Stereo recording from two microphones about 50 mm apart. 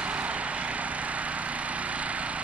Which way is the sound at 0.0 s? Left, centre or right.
Right.